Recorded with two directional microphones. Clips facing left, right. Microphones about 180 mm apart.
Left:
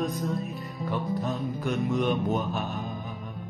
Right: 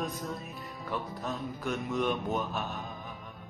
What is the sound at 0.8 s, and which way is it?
Mantra, centre (ahead or behind).